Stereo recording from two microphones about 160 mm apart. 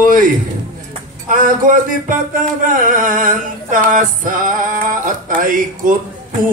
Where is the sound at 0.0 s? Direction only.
60° right (ahead or behind).